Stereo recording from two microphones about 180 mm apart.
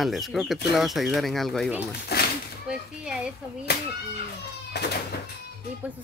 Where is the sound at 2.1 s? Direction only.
65° left (ahead or behind).